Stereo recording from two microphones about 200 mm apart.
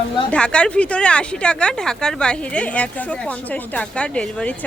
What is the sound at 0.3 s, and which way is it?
Speech, 5° left (ahead or behind).